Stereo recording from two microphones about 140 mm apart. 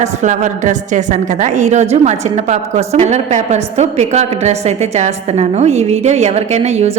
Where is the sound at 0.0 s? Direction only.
60° right (ahead or behind).